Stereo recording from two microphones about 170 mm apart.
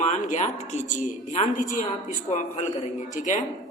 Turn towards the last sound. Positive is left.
turn(degrees=45)  # may be behind; listen again after turning